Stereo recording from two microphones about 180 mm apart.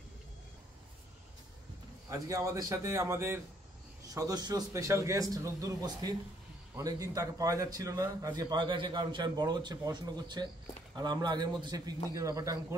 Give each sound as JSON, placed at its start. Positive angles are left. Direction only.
{"t": 2.0, "sound": "a man's voice", "side_deg": -20}